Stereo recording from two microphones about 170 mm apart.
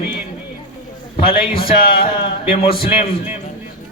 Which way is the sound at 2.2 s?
35° left (ahead or behind).